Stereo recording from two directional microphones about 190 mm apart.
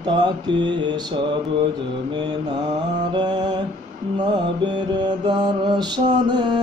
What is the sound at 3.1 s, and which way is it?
Mantra, 25° right (ahead or behind).